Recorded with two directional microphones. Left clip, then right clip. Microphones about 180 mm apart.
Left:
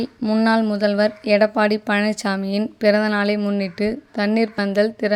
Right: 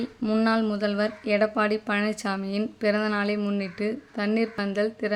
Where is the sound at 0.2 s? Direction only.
20° left (ahead or behind).